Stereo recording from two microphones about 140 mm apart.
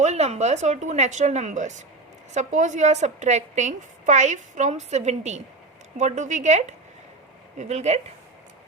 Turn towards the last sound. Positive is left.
turn(degrees=-55)  # may be behind; listen again after turning